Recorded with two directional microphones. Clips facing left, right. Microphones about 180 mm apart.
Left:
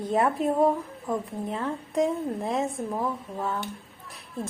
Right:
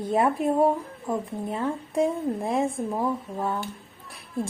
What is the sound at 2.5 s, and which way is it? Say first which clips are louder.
Speech: right 3 dB; 10° right (ahead or behind).